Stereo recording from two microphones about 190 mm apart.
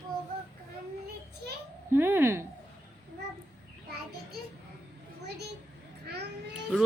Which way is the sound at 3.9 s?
55° right (ahead or behind).